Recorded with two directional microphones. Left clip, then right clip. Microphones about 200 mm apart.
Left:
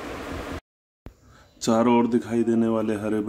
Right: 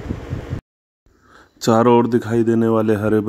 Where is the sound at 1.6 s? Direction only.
40° right (ahead or behind).